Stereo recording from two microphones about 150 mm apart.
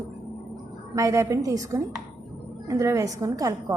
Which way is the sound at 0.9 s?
20° right (ahead or behind).